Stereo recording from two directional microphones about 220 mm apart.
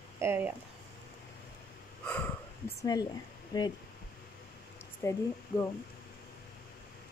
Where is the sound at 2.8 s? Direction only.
15° left (ahead or behind).